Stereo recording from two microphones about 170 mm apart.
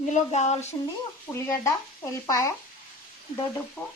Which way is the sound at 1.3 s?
15° left (ahead or behind).